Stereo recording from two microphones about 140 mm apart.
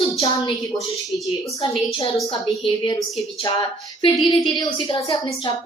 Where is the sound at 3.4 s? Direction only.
40° left (ahead or behind).